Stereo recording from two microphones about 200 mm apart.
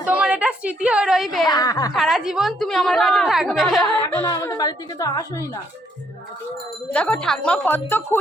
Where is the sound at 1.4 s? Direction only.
20° left (ahead or behind).